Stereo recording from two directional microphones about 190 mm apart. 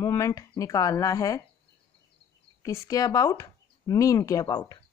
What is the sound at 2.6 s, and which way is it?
Speech, 15° left (ahead or behind).